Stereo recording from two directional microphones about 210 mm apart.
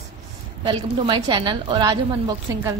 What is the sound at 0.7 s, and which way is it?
A woman's voice, 25° right (ahead or behind).